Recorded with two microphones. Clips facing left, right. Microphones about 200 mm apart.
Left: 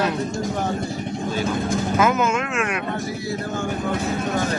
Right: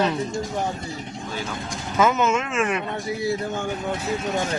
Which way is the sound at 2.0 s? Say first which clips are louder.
Right 2 dB; 5° left (ahead or behind).